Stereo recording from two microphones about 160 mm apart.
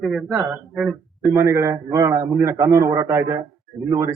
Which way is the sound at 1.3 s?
15° right (ahead or behind).